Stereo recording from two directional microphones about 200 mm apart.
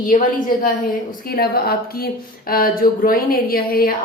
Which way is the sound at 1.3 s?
50° left (ahead or behind).